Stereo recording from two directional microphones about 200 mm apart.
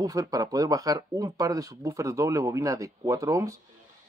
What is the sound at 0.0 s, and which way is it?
A man's voice, 20° right (ahead or behind).